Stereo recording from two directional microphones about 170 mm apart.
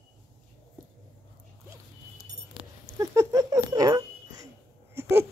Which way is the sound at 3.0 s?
20° right (ahead or behind).